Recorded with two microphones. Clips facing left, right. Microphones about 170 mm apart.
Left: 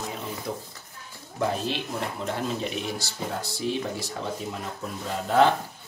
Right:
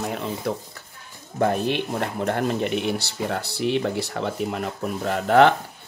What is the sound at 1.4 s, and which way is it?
Speech, 55° right (ahead or behind).